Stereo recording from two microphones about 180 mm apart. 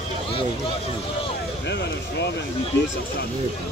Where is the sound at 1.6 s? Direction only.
70° left (ahead or behind).